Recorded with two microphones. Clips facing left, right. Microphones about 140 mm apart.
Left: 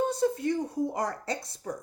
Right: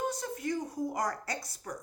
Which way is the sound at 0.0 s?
30° left (ahead or behind).